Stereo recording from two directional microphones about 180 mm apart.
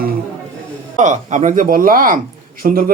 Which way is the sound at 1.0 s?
45° right (ahead or behind).